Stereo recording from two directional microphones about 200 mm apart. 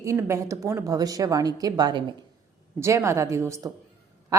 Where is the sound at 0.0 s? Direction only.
15° right (ahead or behind).